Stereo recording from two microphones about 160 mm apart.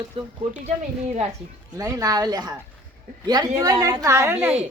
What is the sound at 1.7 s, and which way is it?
A woman's voice, 20° right (ahead or behind).